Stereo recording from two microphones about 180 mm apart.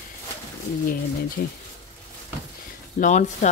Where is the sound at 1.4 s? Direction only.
50° left (ahead or behind).